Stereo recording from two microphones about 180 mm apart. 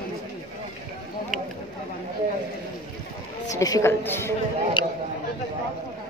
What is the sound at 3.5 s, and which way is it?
Speech, 20° left (ahead or behind).